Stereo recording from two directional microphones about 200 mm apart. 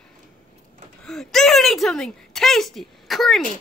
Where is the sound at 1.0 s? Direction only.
Centre (ahead or behind).